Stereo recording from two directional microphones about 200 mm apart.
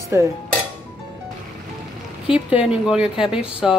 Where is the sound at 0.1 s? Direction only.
15° right (ahead or behind).